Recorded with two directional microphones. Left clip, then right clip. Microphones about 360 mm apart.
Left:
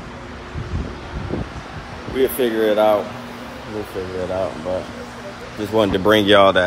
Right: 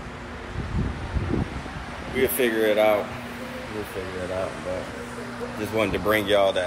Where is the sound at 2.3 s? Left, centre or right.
Centre.